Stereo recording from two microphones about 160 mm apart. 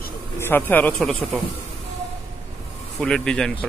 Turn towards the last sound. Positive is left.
turn(degrees=5)  # may be behind; listen again after turning